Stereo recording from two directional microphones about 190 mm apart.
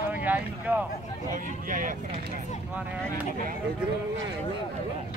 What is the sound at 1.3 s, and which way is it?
Speech, 45° right (ahead or behind).